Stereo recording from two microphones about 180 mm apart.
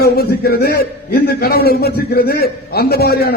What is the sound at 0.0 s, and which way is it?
A man's voice, 60° left (ahead or behind).